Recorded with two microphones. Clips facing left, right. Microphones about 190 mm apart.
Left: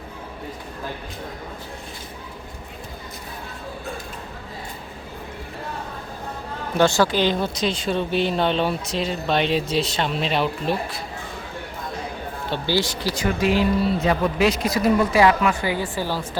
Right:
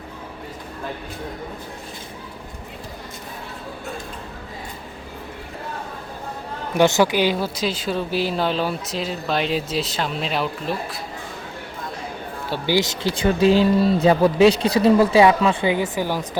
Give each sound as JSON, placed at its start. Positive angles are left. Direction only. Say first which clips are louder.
{"t": 6.7, "sound": "speech", "louder": "right 2 dB", "side_deg": -15}
{"t": 12.5, "sound": "speech", "louder": "right 2 dB", "side_deg": -15}